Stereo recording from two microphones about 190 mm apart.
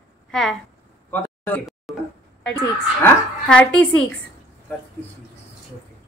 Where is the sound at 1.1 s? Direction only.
10° left (ahead or behind).